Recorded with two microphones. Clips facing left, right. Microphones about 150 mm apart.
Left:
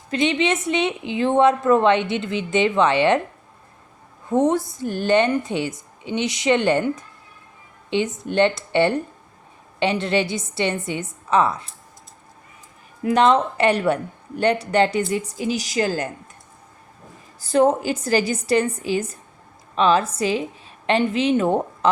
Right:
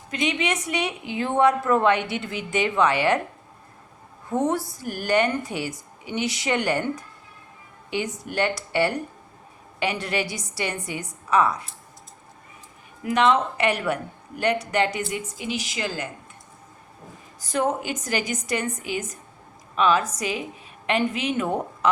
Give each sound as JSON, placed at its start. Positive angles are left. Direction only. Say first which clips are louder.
{"t": 0.1, "sound": "a woman's voice", "louder": "left 5 dB", "side_deg": 30}
{"t": 4.3, "sound": "a woman's voice", "louder": "left 5 dB", "side_deg": 20}
{"t": 13.1, "sound": "speech", "louder": "left 4 dB", "side_deg": 35}
{"t": 17.4, "sound": "a woman's voice", "louder": "left 7 dB", "side_deg": 30}